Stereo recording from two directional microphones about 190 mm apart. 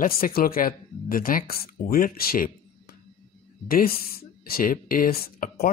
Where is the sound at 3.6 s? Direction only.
50° left (ahead or behind).